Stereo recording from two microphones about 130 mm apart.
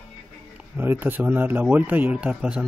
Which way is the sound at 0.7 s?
15° right (ahead or behind).